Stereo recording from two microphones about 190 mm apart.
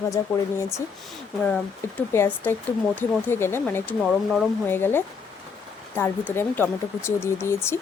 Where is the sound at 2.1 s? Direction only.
10° left (ahead or behind).